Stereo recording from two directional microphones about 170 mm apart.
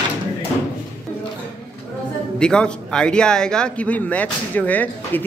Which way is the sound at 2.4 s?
5° left (ahead or behind).